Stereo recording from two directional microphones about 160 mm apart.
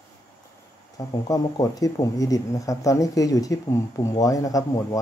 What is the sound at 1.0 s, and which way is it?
Speech, 20° left (ahead or behind).